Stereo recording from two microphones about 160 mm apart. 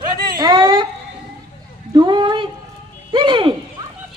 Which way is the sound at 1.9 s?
30° right (ahead or behind).